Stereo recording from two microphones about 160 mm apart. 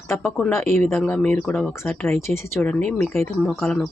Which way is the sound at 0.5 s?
15° left (ahead or behind).